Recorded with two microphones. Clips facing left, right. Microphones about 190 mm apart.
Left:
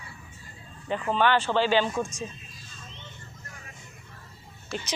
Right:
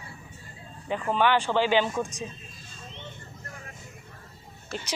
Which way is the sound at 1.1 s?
15° right (ahead or behind).